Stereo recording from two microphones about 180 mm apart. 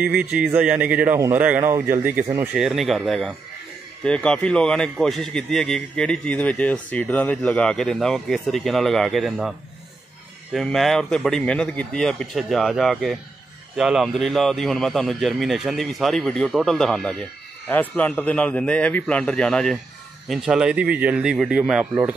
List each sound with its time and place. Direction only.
0.0 s speech: 5° right (ahead or behind)
10.5 s a man's voice: centre (ahead or behind)